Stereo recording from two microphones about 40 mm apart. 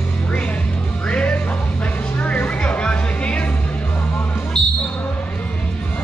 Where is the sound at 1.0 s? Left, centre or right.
Left.